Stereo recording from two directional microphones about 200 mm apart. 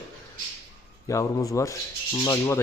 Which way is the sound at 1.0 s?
15° left (ahead or behind).